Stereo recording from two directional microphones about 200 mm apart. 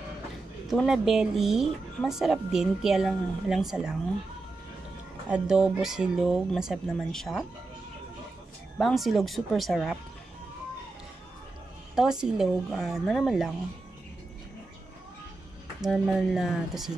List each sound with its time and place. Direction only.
0.7 s speech: centre (ahead or behind)
5.3 s speech: 5° right (ahead or behind)
8.7 s speech: centre (ahead or behind)
11.9 s speech: 5° right (ahead or behind)
15.8 s speech: centre (ahead or behind)